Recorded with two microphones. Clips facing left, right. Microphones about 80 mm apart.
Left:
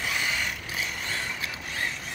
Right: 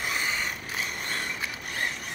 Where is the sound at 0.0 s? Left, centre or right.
Right.